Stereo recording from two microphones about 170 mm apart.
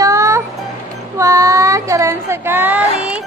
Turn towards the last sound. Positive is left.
turn(degrees=-10)  # may be behind; listen again after turning